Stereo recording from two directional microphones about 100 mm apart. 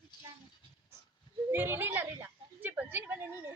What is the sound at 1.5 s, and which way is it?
Speech, 20° right (ahead or behind).